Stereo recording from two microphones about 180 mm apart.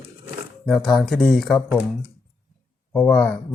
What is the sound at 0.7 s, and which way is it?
Speech, centre (ahead or behind).